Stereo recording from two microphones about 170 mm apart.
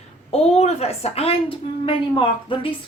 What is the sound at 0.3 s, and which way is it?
A woman's voice, 40° left (ahead or behind).